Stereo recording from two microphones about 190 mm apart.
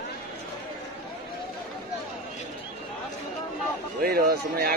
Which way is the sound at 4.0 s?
55° right (ahead or behind).